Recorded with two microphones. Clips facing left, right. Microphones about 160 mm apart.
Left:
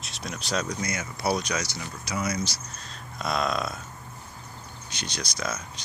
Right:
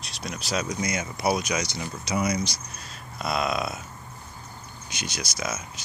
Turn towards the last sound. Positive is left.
turn(degrees=-5)  # may be behind; listen again after turning